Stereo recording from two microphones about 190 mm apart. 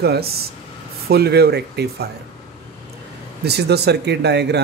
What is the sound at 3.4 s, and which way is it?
Speech, 60° right (ahead or behind).